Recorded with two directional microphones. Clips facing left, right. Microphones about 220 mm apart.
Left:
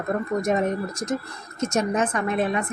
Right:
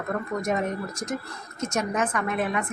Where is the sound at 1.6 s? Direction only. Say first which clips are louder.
Left 4 dB; 25° left (ahead or behind).